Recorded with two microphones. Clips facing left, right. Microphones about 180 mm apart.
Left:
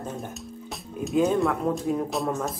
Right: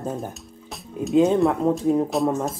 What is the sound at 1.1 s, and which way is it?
Speech, 25° right (ahead or behind).